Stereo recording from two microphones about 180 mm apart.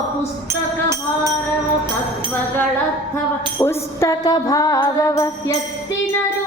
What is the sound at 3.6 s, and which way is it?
Music, 20° left (ahead or behind).